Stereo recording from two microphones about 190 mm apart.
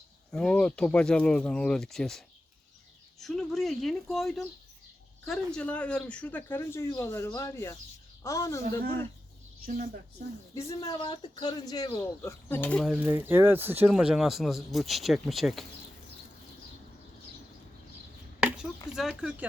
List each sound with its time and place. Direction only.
0.3 s speech: 5° left (ahead or behind)
10.5 s speech: 15° left (ahead or behind); by 15.6 s centre (ahead or behind)
18.3 s chop: 5° right (ahead or behind)
18.9 s speech: 5° right (ahead or behind)